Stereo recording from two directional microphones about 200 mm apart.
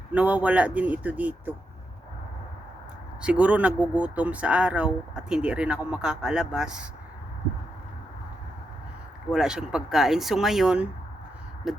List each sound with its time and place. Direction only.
0.1 s a man's voice: 10° right (ahead or behind)
3.2 s speech: 5° right (ahead or behind)
9.3 s speech: 5° right (ahead or behind)